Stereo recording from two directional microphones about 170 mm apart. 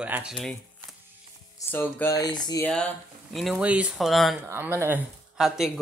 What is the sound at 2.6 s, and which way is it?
Speech, 5° left (ahead or behind).